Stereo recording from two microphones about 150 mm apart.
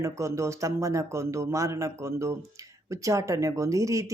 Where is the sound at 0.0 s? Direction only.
20° right (ahead or behind).